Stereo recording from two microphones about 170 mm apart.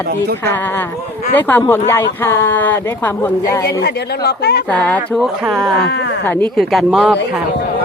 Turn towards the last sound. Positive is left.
turn(degrees=-5)  # may be behind; listen again after turning